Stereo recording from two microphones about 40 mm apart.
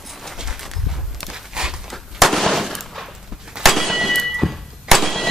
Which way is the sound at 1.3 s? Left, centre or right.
Centre.